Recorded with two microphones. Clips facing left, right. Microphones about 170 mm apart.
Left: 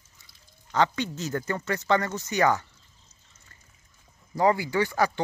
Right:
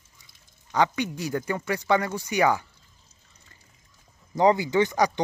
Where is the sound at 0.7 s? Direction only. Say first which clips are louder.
Right 1 dB; 15° right (ahead or behind).